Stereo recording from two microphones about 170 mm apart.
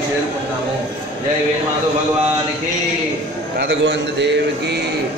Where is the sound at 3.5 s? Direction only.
75° right (ahead or behind).